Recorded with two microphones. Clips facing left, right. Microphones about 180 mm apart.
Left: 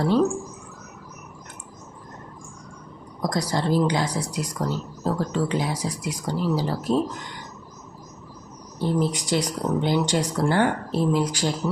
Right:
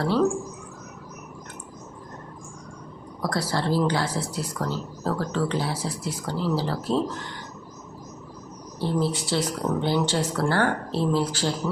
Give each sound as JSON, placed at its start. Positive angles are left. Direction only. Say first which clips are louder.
{"t": 0.0, "sound": "speech", "louder": "left 2 dB", "side_deg": 15}
{"t": 3.2, "sound": "speech", "louder": "left 2 dB", "side_deg": 15}
{"t": 8.8, "sound": "speech", "louder": "left 2 dB", "side_deg": 15}